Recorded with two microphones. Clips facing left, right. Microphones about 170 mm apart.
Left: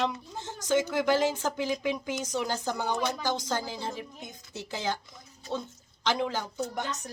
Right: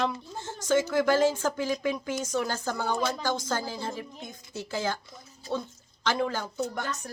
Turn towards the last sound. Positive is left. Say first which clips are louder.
# right 1 dB
turn(degrees=15)  # may be behind; listen again after turning